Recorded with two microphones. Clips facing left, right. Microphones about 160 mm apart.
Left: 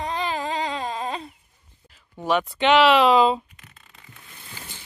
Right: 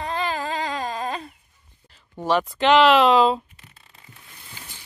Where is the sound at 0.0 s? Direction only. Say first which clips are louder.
Even; 20° left (ahead or behind).